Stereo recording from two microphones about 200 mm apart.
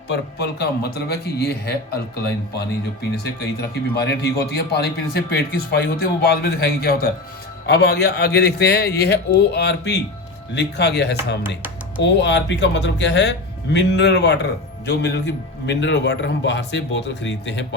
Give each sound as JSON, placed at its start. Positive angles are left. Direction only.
{"t": 0.1, "sound": "speech", "side_deg": 55}
{"t": 3.2, "sound": "a man's voice", "side_deg": 55}